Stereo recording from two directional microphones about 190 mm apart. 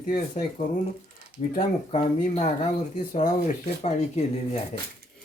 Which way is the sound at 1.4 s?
35° left (ahead or behind).